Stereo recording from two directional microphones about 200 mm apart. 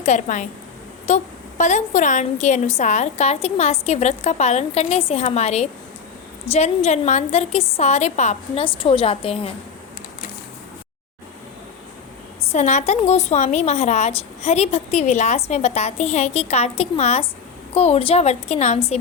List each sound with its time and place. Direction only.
0.0 s a woman's voice: 40° left (ahead or behind)
12.5 s a woman's voice: 35° left (ahead or behind)